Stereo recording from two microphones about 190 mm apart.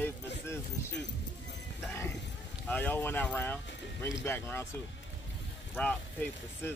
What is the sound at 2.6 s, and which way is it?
Speech, 10° left (ahead or behind).